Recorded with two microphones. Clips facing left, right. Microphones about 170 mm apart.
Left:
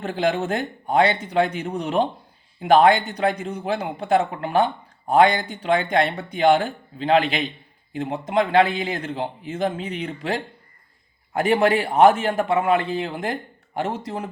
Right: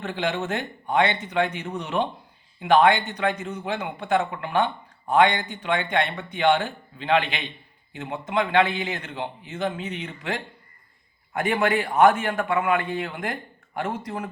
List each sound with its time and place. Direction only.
0.0 s a man's voice: 35° left (ahead or behind)